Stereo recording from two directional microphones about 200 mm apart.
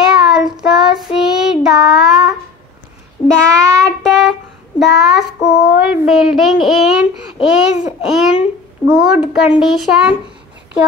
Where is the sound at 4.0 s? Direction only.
Centre (ahead or behind).